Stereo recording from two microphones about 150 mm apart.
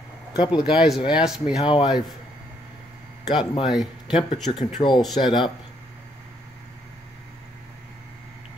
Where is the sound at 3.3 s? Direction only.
30° left (ahead or behind).